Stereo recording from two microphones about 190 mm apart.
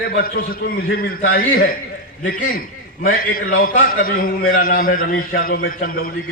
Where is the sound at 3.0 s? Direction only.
50° left (ahead or behind).